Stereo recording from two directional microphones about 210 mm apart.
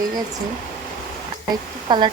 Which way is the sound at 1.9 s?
20° right (ahead or behind).